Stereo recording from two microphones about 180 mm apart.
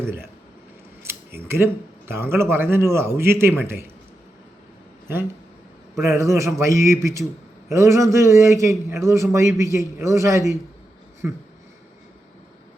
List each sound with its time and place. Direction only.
0.0 s a man's voice: 15° right (ahead or behind)
6.1 s a man's voice: 15° right (ahead or behind)